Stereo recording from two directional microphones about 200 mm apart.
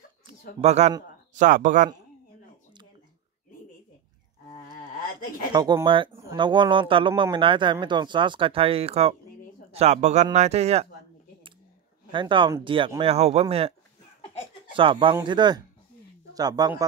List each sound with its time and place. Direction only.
0.6 s speech: 35° right (ahead or behind)
5.5 s speech: 20° right (ahead or behind)
12.1 s speech: 25° right (ahead or behind)